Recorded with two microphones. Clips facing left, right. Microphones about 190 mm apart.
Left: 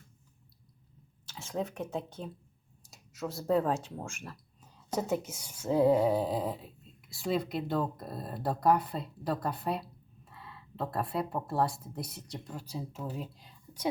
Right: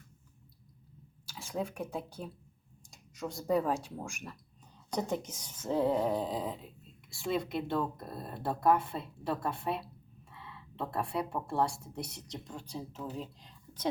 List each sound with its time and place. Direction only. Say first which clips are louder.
1.3 s speech: left 1 dB; 10° right (ahead or behind)
2.9 s a sound: left 2 dB; 5° left (ahead or behind)
3.5 s speech: left 2 dB; 10° right (ahead or behind)
4.9 s speech: left 2 dB; 5° left (ahead or behind)
10.3 s speech: left 2 dB; centre (ahead or behind)